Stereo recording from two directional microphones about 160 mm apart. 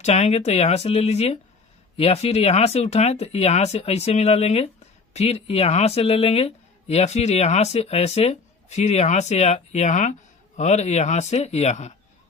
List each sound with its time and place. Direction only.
0.0 s speech: 45° left (ahead or behind)